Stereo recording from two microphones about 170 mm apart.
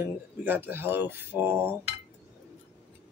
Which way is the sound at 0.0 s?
10° right (ahead or behind).